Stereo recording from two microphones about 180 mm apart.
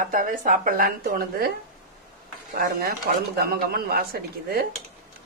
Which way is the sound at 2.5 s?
55° right (ahead or behind).